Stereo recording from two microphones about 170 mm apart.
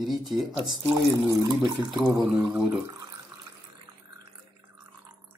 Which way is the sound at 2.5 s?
20° right (ahead or behind).